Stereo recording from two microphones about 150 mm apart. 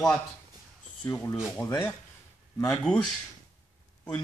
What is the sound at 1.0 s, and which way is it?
Speech, 20° left (ahead or behind).